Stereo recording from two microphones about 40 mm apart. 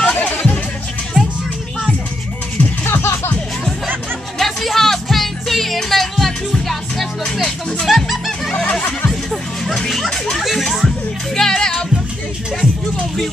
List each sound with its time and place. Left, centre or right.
0.0 s music: left
0.3 s music: left
1.1 s music: centre
2.8 s music: left
4.4 s music: centre
9.8 s children playing: centre
10.3 s music: centre
11.3 s music: centre